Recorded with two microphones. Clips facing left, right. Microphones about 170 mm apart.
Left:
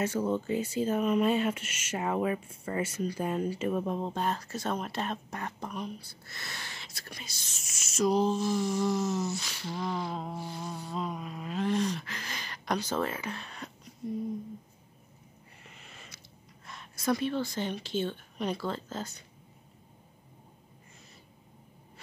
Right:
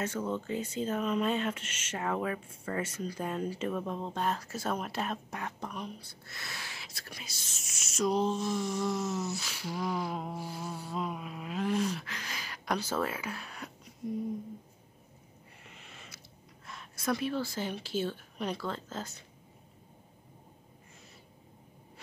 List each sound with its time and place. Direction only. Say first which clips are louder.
0.0 s speech: left 4 dB; 10° left (ahead or behind)
4.1 s speech: left 1 dB; centre (ahead or behind)
15.6 s a sound: even; centre (ahead or behind)
16.6 s a woman's voice: left 3 dB; centre (ahead or behind)